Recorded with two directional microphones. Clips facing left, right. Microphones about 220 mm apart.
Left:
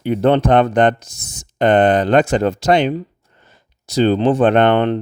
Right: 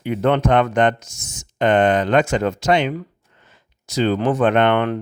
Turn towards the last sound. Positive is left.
turn(degrees=30)  # may be behind; listen again after turning